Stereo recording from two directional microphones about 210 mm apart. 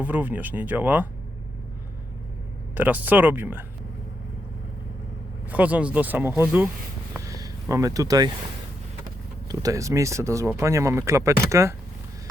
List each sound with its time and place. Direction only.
0.0 s speech: 10° right (ahead or behind)
2.7 s speech: 10° right (ahead or behind)
5.5 s speech: 5° right (ahead or behind)
7.2 s a sound: 15° right (ahead or behind)
9.5 s speech: 15° right (ahead or behind)